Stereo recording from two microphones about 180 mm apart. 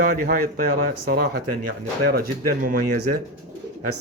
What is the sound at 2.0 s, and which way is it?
Speech, 55° right (ahead or behind).